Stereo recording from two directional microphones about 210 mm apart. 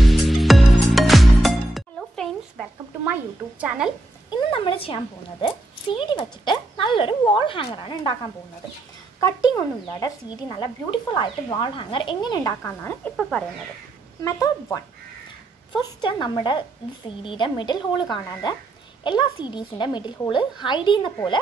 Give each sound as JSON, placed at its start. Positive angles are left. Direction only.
{"t": 0.0, "sound": "music", "side_deg": 0}
{"t": 3.6, "sound": "speech", "side_deg": -5}
{"t": 4.3, "sound": "a woman's voice", "side_deg": 25}
{"t": 9.2, "sound": "a woman's voice", "side_deg": 15}
{"t": 14.2, "sound": "a woman's voice", "side_deg": 15}